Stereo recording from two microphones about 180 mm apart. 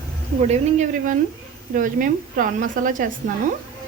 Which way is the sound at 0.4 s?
40° right (ahead or behind).